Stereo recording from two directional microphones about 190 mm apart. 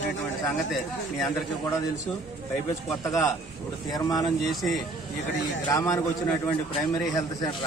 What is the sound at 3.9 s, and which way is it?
Speech, 20° left (ahead or behind).